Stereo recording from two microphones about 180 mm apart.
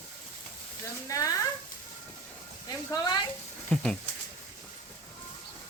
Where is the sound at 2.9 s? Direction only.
20° left (ahead or behind).